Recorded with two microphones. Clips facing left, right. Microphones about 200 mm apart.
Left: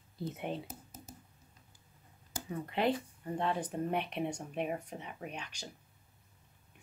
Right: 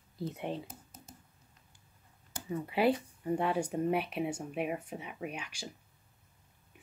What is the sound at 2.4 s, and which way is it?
Speech, 5° right (ahead or behind).